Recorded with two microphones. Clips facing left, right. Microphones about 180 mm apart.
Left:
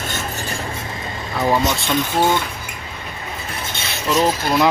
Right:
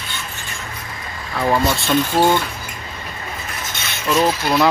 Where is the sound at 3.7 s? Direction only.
30° left (ahead or behind).